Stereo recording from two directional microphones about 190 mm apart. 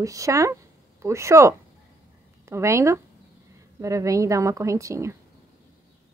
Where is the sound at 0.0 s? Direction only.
15° right (ahead or behind).